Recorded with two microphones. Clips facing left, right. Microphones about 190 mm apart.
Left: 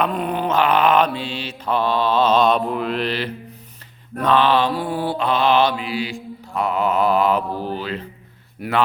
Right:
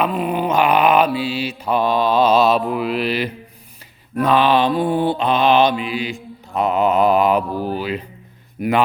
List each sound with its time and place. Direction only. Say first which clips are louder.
0.0 s mantra: right 2 dB; 5° right (ahead or behind)